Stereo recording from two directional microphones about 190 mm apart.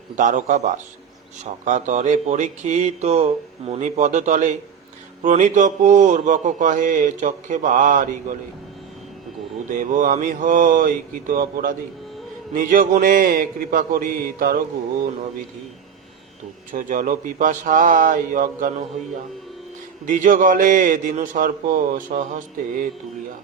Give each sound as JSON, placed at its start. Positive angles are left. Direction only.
{"t": 0.2, "sound": "speech", "side_deg": -40}
{"t": 1.6, "sound": "speech", "side_deg": -40}
{"t": 9.7, "sound": "a man's voice", "side_deg": -45}
{"t": 16.7, "sound": "a man's voice", "side_deg": -45}
{"t": 20.1, "sound": "a man's voice", "side_deg": -40}